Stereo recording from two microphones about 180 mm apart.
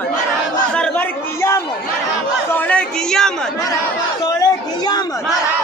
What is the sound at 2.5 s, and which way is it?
Speech, 5° left (ahead or behind).